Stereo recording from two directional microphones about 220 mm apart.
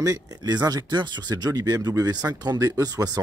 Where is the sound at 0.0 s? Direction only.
15° right (ahead or behind).